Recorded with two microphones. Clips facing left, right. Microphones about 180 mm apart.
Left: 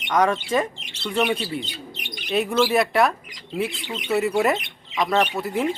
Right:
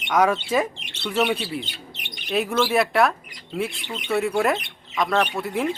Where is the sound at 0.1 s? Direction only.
5° right (ahead or behind).